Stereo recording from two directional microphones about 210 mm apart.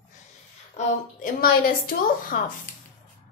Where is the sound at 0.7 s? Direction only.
40° left (ahead or behind).